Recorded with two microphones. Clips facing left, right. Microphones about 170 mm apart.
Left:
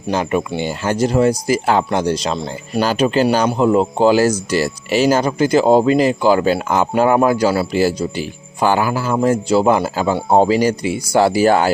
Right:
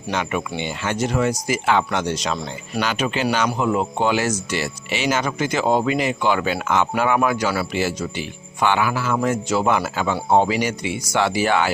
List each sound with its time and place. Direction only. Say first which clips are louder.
0.1 s speech: left 6 dB; 35° left (ahead or behind)